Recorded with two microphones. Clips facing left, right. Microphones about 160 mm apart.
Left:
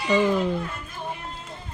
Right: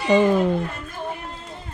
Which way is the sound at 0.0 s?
25° right (ahead or behind).